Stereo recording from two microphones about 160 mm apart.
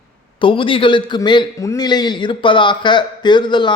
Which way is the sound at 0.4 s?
35° left (ahead or behind).